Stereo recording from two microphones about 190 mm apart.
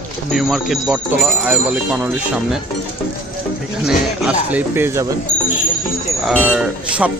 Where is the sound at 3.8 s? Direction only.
5° right (ahead or behind).